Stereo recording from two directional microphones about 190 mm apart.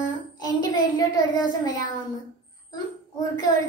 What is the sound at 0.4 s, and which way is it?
Child singing, 20° left (ahead or behind).